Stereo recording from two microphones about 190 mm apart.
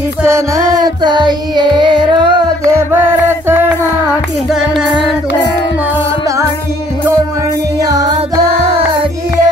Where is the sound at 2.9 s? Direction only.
10° right (ahead or behind).